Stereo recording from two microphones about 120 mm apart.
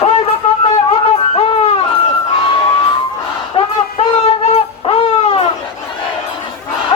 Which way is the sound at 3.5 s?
50° left (ahead or behind).